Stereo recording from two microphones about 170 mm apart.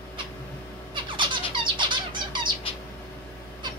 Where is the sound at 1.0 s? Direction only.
30° right (ahead or behind).